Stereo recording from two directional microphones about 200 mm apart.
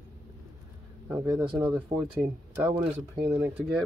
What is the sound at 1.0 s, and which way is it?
Speech, 5° right (ahead or behind).